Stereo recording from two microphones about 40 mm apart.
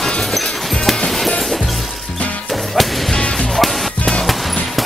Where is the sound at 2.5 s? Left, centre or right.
Centre.